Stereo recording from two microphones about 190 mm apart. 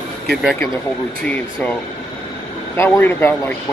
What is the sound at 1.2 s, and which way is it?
Speech, 10° left (ahead or behind).